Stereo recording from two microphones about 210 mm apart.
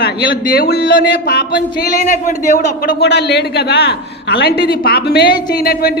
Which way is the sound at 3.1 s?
55° left (ahead or behind).